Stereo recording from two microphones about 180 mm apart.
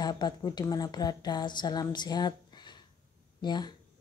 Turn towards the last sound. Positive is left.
turn(degrees=25)  # may be behind; listen again after turning